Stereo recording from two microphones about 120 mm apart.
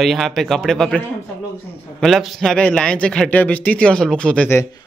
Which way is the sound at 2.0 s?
Centre (ahead or behind).